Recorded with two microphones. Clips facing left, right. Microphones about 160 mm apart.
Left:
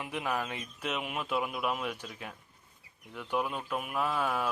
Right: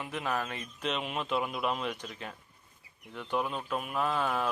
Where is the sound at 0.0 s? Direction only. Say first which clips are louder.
Even; 15° left (ahead or behind).